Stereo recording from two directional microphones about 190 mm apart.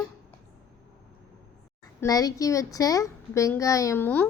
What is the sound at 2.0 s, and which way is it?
A woman's voice, 20° left (ahead or behind).